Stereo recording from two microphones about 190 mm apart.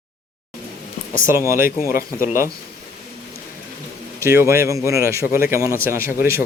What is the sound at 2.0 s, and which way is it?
Speech, 50° left (ahead or behind).